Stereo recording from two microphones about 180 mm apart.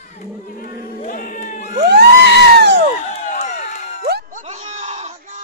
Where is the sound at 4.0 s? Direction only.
55° right (ahead or behind); by 5.4 s 40° right (ahead or behind).